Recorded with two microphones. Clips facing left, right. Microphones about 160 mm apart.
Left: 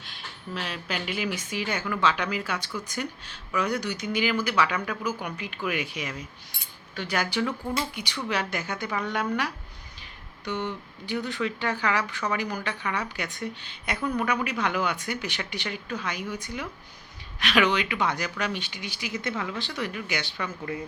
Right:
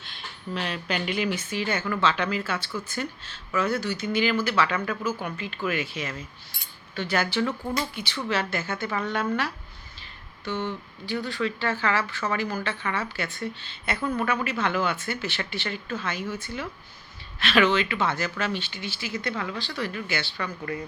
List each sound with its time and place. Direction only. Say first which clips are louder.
0.5 s speech: right 3 dB; 5° left (ahead or behind)
10.4 s speech: right 1 dB; 15° left (ahead or behind)